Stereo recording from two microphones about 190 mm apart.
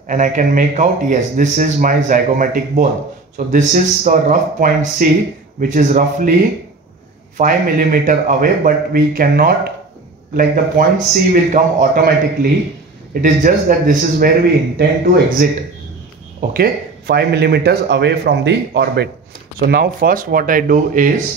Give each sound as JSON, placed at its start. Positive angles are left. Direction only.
{"t": 0.1, "sound": "a man's voice", "side_deg": -45}
{"t": 7.3, "sound": "a man's voice", "side_deg": -50}